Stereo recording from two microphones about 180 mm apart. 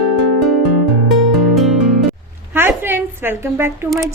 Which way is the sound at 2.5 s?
10° right (ahead or behind).